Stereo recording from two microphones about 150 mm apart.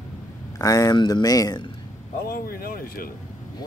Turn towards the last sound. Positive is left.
turn(degrees=75)  # may be behind; listen again after turning